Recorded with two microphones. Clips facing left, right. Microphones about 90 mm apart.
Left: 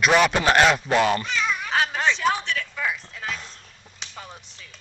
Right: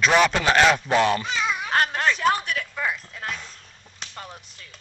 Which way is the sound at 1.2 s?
15° right (ahead or behind).